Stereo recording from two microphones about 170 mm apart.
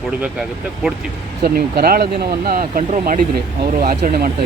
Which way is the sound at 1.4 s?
65° right (ahead or behind).